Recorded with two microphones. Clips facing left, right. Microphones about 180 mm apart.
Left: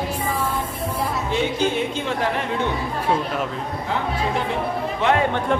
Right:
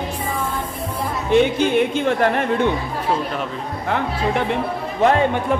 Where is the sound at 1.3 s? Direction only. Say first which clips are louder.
Right 8 dB; 60° right (ahead or behind).